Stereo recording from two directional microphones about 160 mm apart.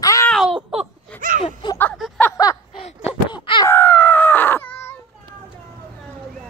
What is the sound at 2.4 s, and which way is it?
Snicker, 20° left (ahead or behind).